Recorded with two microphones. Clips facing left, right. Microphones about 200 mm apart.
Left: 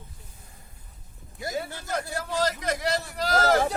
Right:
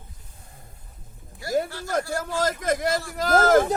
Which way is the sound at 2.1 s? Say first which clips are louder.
Right 2 dB; 45° right (ahead or behind).